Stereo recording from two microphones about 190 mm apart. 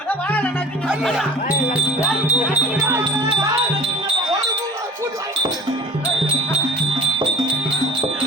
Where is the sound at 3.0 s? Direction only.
25° right (ahead or behind).